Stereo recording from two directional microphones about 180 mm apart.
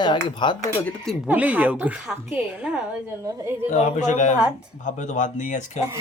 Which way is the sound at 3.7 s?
40° left (ahead or behind).